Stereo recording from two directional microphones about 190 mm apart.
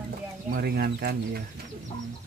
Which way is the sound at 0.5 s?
55° right (ahead or behind).